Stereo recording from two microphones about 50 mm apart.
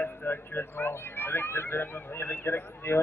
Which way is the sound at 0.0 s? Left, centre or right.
Left.